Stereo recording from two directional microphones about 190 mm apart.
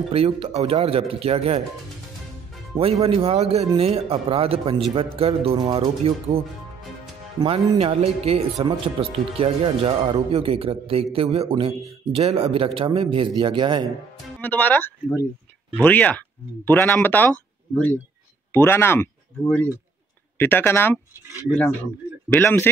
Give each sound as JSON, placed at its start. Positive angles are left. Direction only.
{"t": 0.1, "sound": "speech", "side_deg": -30}
{"t": 3.0, "sound": "speech", "side_deg": -30}
{"t": 7.4, "sound": "speech", "side_deg": -30}
{"t": 14.4, "sound": "speech", "side_deg": 10}
{"t": 18.5, "sound": "speech", "side_deg": 10}